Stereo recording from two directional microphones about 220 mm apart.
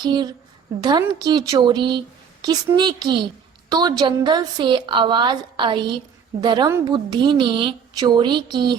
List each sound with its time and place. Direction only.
0.0 s a woman's voice: 20° right (ahead or behind)